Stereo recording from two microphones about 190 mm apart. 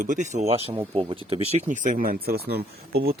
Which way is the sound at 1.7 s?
45° right (ahead or behind).